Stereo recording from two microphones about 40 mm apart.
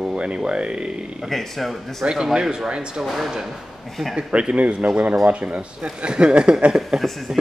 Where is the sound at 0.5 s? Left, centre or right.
Right.